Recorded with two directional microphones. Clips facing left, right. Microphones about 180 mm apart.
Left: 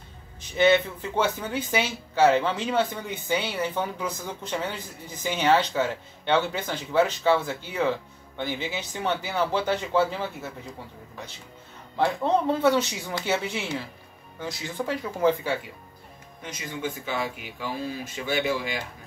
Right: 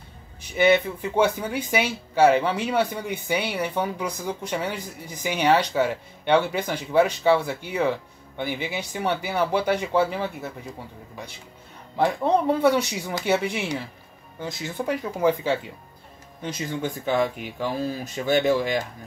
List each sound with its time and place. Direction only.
0.4 s speech: 10° right (ahead or behind)
12.0 s speech: 15° right (ahead or behind)
16.4 s speech: 40° right (ahead or behind)